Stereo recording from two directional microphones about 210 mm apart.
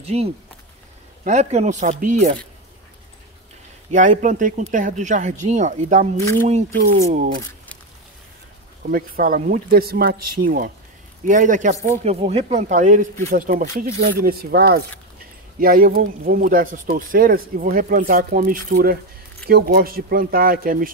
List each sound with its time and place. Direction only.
0.0 s speech: 30° right (ahead or behind)
3.9 s speech: 35° right (ahead or behind)
8.9 s speech: 45° right (ahead or behind)